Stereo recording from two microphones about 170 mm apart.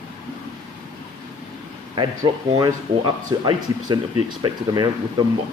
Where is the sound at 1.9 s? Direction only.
25° right (ahead or behind).